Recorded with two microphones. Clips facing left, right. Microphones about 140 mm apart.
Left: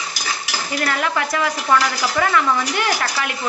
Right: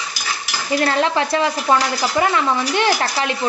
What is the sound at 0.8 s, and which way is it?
Stir, 30° right (ahead or behind).